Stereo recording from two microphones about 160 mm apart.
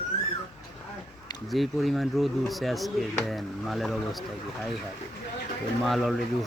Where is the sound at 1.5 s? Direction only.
Centre (ahead or behind).